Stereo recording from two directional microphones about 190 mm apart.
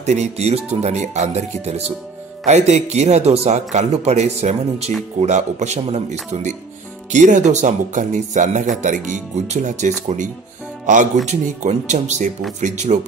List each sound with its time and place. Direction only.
0.0 s speech: 35° right (ahead or behind)